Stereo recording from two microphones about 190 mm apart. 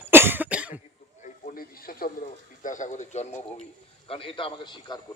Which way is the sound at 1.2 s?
45° left (ahead or behind).